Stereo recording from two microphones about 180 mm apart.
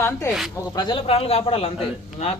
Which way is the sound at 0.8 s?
25° left (ahead or behind).